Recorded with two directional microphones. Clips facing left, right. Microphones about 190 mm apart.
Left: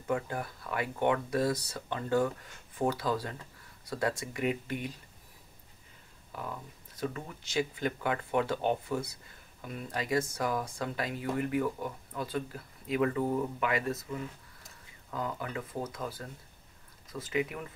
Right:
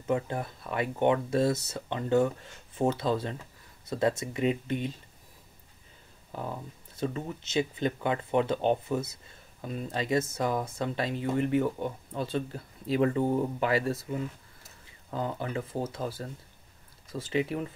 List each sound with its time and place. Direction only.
0.0 s speech: 25° right (ahead or behind)
7.0 s speech: 25° right (ahead or behind)